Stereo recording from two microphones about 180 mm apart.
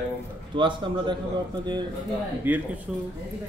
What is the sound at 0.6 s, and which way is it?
Speech, 25° right (ahead or behind).